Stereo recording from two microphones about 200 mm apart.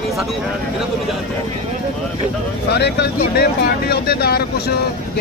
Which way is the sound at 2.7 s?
55° left (ahead or behind).